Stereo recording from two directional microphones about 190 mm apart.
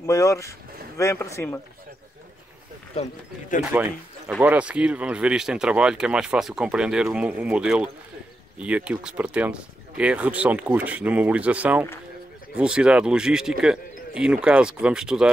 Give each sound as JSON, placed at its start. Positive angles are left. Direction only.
{"t": 0.0, "sound": "speech", "side_deg": 15}
{"t": 3.0, "sound": "speech", "side_deg": 45}
{"t": 3.7, "sound": "speech", "side_deg": -10}